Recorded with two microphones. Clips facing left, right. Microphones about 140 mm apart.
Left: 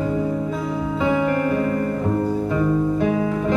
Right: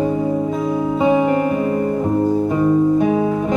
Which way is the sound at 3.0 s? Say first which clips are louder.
Right 4 dB; 20° right (ahead or behind).